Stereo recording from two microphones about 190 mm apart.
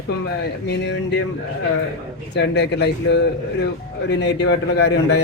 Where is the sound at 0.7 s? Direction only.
65° left (ahead or behind).